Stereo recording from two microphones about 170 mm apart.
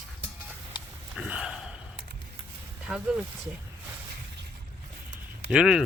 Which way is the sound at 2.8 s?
5° right (ahead or behind).